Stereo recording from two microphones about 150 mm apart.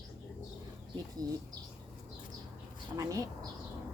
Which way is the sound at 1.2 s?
25° right (ahead or behind).